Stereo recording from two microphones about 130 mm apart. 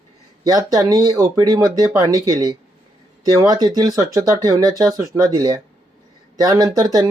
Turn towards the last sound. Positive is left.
turn(degrees=-25)  # may be behind; listen again after turning